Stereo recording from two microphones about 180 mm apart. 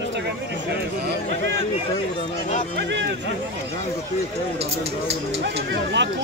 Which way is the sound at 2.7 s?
70° right (ahead or behind).